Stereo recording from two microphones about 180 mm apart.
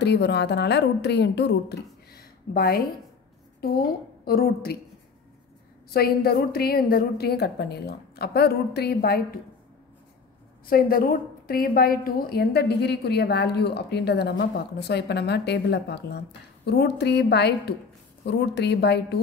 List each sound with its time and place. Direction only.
0.0 s a woman's voice: 65° left (ahead or behind)
5.9 s a woman's voice: 55° left (ahead or behind)
10.7 s a woman's voice: 55° left (ahead or behind); by 19.1 s 70° left (ahead or behind)